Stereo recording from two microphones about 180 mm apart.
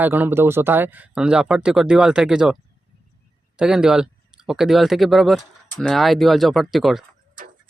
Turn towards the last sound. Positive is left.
turn(degrees=0)  # may be behind; listen again after turning